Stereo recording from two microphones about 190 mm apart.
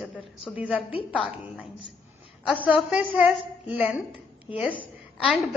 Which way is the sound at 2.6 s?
5° right (ahead or behind).